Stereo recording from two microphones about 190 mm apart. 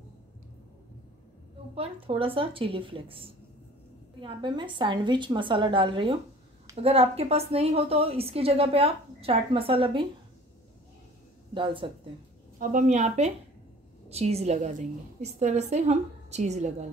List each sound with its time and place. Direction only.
1.8 s a woman's voice: 30° right (ahead or behind)
11.5 s a woman's voice: 25° right (ahead or behind)
12.5 s a woman's voice: 40° right (ahead or behind)